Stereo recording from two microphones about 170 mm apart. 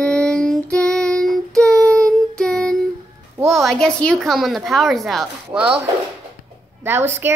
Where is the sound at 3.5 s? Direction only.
Centre (ahead or behind).